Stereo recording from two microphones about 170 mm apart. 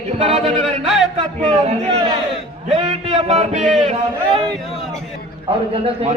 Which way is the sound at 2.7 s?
35° right (ahead or behind).